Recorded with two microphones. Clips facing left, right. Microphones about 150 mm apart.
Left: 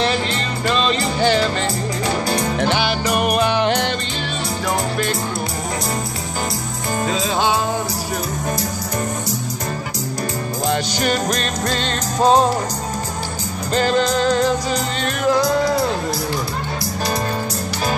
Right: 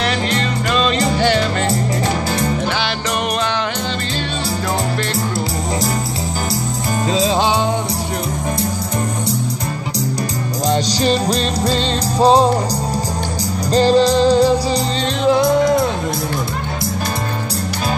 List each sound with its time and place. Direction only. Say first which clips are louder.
7.1 s music: right 6 dB; 25° right (ahead or behind)
10.9 s music: right 3 dB; 35° right (ahead or behind)
13.7 s music: right 5 dB; 35° right (ahead or behind)
15.2 s music: right 4 dB; 20° right (ahead or behind)